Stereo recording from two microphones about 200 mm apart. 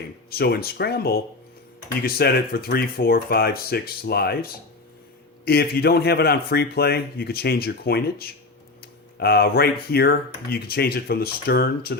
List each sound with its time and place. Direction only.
0.3 s speech: 55° left (ahead or behind)
5.5 s speech: 50° left (ahead or behind)